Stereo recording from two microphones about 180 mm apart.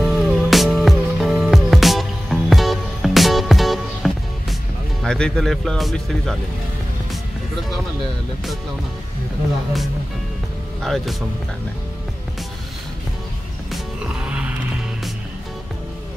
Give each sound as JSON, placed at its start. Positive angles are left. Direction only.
{"t": 0.0, "sound": "music", "side_deg": 0}
{"t": 5.0, "sound": "a man's voice", "side_deg": 5}
{"t": 10.8, "sound": "a man's voice", "side_deg": 0}
{"t": 13.7, "sound": "music", "side_deg": -5}